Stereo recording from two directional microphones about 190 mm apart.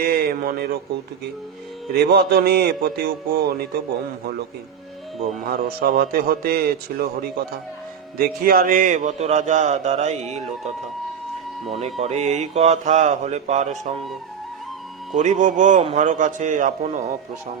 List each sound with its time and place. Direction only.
0.0 s a man's voice: 50° right (ahead or behind)
2.0 s a man's voice: 55° right (ahead or behind)
5.5 s a man's voice: 50° right (ahead or behind)
11.9 s a man's voice: 35° right (ahead or behind)
15.1 s a man's voice: 40° right (ahead or behind)